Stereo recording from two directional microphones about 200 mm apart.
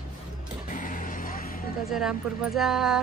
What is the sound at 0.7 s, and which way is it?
Vehicle, 40° left (ahead or behind).